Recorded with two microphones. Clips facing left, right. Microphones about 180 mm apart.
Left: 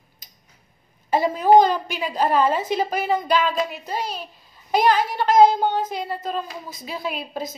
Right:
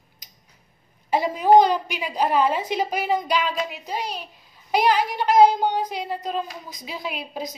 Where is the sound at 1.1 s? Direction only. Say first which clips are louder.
Left 1 dB; 15° right (ahead or behind).